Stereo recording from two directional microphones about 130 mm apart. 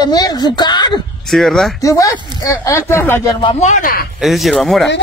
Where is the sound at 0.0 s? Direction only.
30° left (ahead or behind).